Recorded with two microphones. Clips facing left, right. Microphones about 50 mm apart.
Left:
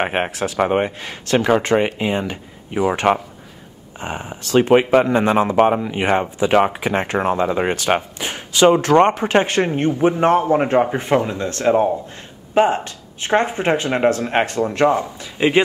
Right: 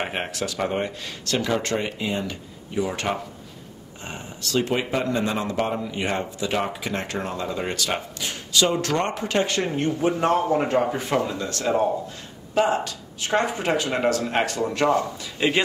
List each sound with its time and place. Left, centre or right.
0.0 s speech: left
3.0 s speech: left
4.0 s speech: left